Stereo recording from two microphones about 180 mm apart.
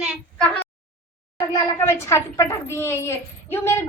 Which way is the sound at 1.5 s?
15° left (ahead or behind).